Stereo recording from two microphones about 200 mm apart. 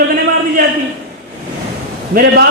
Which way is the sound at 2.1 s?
45° right (ahead or behind).